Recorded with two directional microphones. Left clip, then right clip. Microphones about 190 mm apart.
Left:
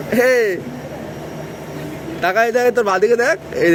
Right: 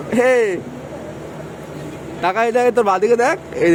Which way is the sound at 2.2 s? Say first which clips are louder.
Left 1 dB; 15° right (ahead or behind).